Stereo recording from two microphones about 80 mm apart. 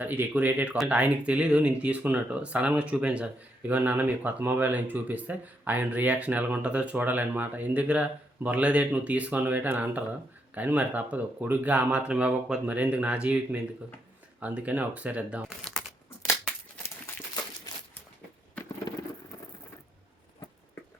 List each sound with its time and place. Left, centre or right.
0.0 s speech: right
15.4 s shuffling cards: centre